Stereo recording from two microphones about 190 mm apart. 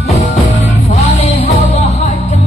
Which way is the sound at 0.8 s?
35° left (ahead or behind).